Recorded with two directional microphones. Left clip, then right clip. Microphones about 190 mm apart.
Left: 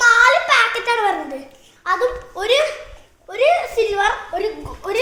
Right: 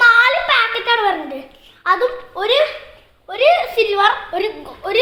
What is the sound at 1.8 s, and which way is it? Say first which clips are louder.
Speech: right 3 dB; 10° right (ahead or behind).